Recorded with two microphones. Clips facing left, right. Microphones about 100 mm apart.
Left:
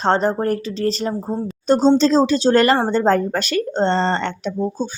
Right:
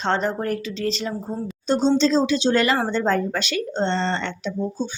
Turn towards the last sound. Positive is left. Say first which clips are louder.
# left 3 dB
turn(degrees=45)  # may be behind; listen again after turning